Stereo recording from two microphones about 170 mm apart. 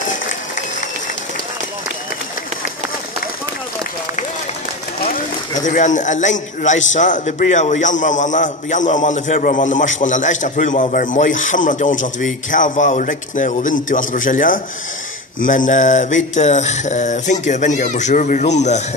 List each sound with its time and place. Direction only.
0.1 s applause: 45° left (ahead or behind)
5.6 s a man's voice: 45° left (ahead or behind)